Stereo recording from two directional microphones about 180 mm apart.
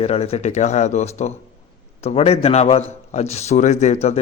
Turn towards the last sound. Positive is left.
turn(degrees=35)  # may be behind; listen again after turning